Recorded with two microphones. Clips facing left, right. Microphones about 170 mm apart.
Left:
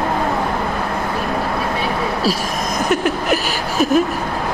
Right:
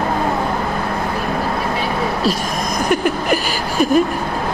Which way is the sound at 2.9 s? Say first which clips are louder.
Right 1 dB; centre (ahead or behind).